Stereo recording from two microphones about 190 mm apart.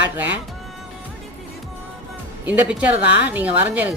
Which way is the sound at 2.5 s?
10° right (ahead or behind).